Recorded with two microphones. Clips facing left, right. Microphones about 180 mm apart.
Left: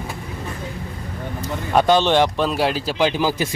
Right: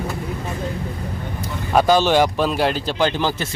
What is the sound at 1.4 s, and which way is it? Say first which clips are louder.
Speech: even; 5° right (ahead or behind).